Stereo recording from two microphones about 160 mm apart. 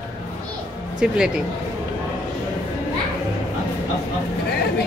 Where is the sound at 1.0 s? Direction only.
5° right (ahead or behind).